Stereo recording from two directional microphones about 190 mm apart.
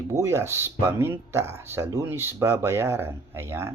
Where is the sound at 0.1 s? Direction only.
15° right (ahead or behind).